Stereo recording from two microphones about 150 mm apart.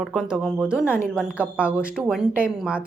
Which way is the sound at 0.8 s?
15° left (ahead or behind).